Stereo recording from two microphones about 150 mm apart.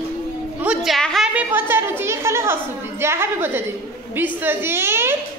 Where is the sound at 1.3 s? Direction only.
15° right (ahead or behind).